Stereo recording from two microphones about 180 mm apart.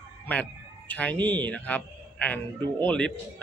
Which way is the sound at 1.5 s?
10° left (ahead or behind).